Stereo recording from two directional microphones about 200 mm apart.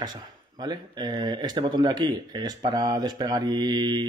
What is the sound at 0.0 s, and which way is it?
Speech, 20° right (ahead or behind).